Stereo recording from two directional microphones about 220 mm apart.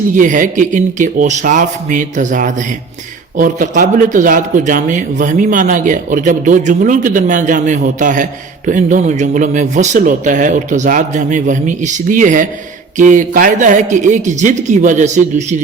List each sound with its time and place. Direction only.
0.2 s a man's voice: 35° right (ahead or behind)